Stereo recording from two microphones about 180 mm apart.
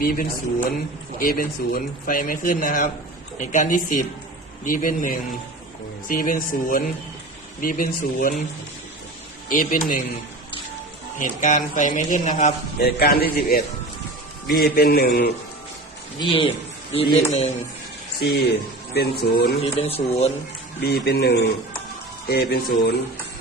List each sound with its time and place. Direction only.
0.0 s a man's voice: 55° left (ahead or behind)
9.5 s speech: 50° left (ahead or behind)
11.2 s speech: 45° left (ahead or behind)
12.8 s a man's voice: 60° left (ahead or behind)
16.2 s speech: 30° left (ahead or behind)
18.2 s a man's voice: 65° left (ahead or behind)
19.6 s speech: 35° left (ahead or behind)
20.8 s a man's voice: 65° left (ahead or behind)